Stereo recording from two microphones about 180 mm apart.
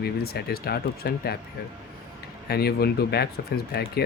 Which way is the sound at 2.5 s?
60° left (ahead or behind).